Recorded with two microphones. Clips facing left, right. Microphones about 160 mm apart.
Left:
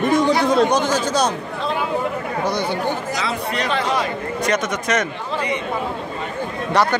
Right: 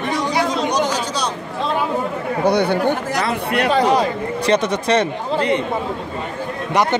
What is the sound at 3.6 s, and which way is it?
Speech, 40° right (ahead or behind).